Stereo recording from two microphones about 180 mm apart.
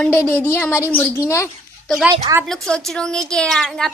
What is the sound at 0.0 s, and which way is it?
A woman's voice, 15° left (ahead or behind).